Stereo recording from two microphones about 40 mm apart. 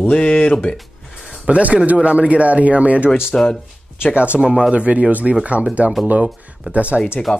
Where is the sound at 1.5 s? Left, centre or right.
Right.